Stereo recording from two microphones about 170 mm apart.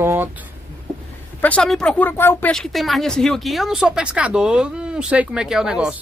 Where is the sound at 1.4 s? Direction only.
5° left (ahead or behind).